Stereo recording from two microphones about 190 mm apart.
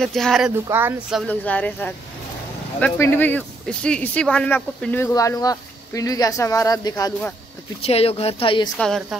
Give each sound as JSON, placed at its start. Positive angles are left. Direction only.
{"t": 0.0, "sound": "a woman's voice", "side_deg": 0}
{"t": 0.7, "sound": "speech", "side_deg": -10}
{"t": 1.2, "sound": "speech", "side_deg": 5}
{"t": 7.8, "sound": "speech", "side_deg": 30}
{"t": 8.7, "sound": "a woman's voice", "side_deg": 0}